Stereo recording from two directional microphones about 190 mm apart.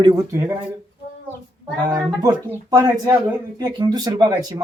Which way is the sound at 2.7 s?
15° right (ahead or behind).